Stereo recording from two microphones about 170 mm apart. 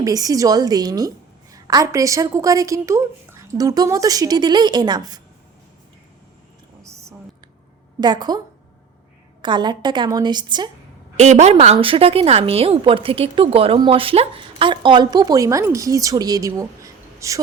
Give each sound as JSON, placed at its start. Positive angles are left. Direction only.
{"t": 0.0, "sound": "a woman's voice", "side_deg": -20}
{"t": 8.0, "sound": "a woman's voice", "side_deg": -25}
{"t": 9.4, "sound": "a woman's voice", "side_deg": -25}
{"t": 11.2, "sound": "a woman's voice", "side_deg": -40}